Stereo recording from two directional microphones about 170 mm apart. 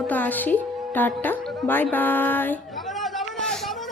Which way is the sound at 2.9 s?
Centre (ahead or behind).